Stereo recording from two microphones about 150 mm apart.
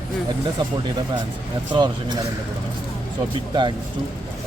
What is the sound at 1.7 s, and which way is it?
Speech, 30° right (ahead or behind).